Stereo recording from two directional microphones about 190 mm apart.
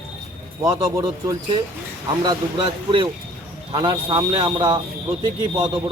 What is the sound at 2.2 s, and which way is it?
Speech, 20° right (ahead or behind).